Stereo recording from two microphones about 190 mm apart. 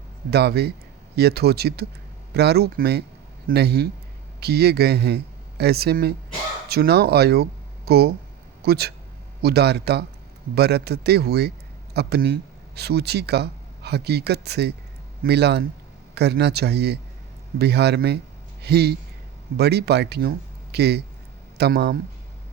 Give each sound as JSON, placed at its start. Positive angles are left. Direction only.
{"t": 0.3, "sound": "speech", "side_deg": -60}